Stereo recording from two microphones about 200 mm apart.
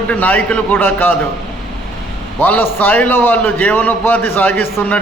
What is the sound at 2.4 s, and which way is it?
A man's voice, 10° left (ahead or behind).